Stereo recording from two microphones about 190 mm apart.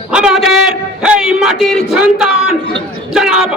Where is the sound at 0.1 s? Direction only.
5° right (ahead or behind).